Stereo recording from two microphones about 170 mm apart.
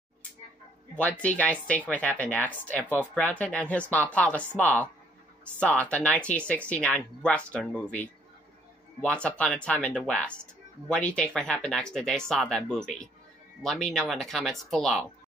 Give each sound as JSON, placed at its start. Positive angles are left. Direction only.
{"t": 0.9, "sound": "speech", "side_deg": 10}